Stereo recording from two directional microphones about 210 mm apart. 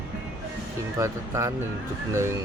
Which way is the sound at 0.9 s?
15° right (ahead or behind).